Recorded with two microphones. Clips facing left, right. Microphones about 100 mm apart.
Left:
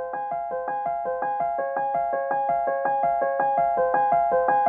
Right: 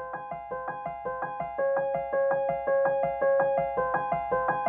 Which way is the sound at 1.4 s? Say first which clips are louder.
Left 3 dB; 20° left (ahead or behind).